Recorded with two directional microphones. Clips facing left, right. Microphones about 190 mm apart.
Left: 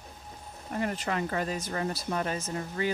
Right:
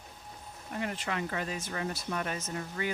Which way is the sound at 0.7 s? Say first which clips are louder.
Left 4 dB; 40° left (ahead or behind).